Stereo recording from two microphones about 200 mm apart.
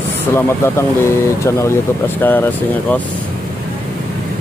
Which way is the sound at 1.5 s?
15° left (ahead or behind).